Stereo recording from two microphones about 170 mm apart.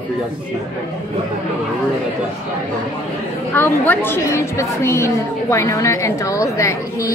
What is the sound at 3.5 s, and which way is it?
A woman's voice, 10° left (ahead or behind).